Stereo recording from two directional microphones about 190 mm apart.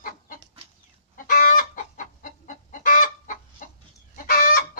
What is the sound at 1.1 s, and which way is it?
Chicken, 45° left (ahead or behind).